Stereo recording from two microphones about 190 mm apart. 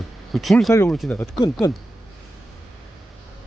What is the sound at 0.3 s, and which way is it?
Speech, centre (ahead or behind).